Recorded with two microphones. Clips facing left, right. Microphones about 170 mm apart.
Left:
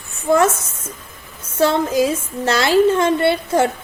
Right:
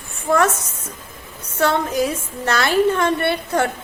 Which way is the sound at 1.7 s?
20° left (ahead or behind).